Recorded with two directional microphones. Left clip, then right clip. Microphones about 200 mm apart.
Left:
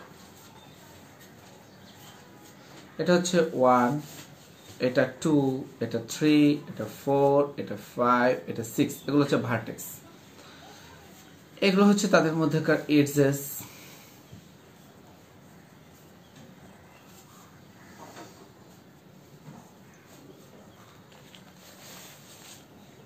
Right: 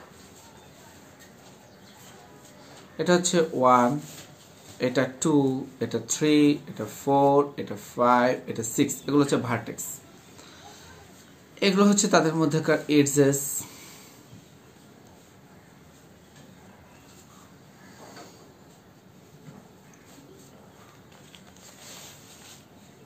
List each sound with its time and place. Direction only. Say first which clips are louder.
3.0 s speech: right 1 dB; 30° right (ahead or behind)
11.6 s speech: right 1 dB; 25° right (ahead or behind)